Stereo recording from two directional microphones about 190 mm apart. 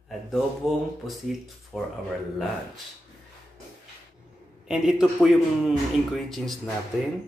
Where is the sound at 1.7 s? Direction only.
Centre (ahead or behind).